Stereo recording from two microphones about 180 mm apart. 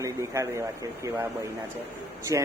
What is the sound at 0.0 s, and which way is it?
Speech, 15° right (ahead or behind).